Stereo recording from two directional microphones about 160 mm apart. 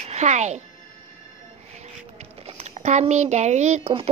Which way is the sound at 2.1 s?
45° right (ahead or behind).